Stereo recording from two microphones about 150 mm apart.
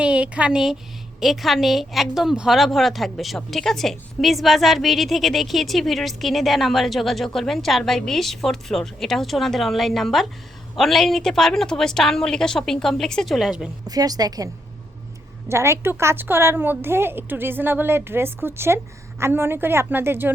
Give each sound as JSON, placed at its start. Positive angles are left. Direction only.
{"t": 0.0, "sound": "a woman's voice", "side_deg": -5}
{"t": 13.8, "sound": "a woman's voice", "side_deg": -25}